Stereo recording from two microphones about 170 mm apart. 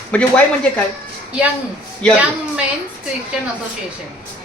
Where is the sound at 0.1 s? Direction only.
5° left (ahead or behind).